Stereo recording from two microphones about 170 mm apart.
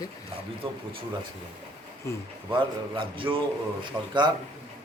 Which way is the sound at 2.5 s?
30° right (ahead or behind).